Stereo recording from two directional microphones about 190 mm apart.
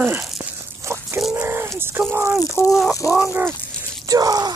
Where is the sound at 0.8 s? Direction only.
15° right (ahead or behind).